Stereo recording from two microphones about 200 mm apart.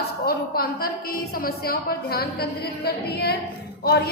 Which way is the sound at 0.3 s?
50° left (ahead or behind).